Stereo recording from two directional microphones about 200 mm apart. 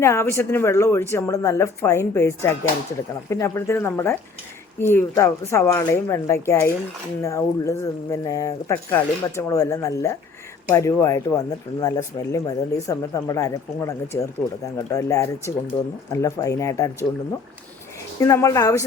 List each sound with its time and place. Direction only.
0.0 s speech: 15° left (ahead or behind)
18.2 s speech: 15° left (ahead or behind)